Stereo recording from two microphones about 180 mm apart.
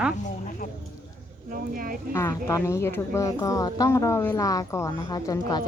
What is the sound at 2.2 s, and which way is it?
Speech, 15° left (ahead or behind).